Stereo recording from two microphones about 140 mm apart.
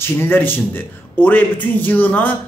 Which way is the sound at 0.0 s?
15° left (ahead or behind).